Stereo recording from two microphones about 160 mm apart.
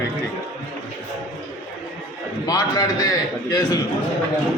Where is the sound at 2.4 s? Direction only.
25° left (ahead or behind).